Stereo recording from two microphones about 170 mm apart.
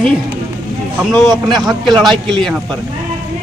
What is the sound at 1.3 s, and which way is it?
Speech, 25° right (ahead or behind).